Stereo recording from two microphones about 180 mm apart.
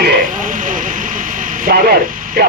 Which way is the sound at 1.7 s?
55° right (ahead or behind).